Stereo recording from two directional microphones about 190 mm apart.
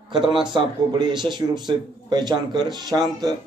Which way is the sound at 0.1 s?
25° right (ahead or behind).